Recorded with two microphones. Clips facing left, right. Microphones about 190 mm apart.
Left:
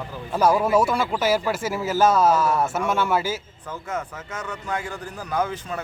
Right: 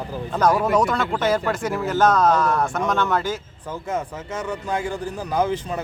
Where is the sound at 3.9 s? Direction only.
30° right (ahead or behind).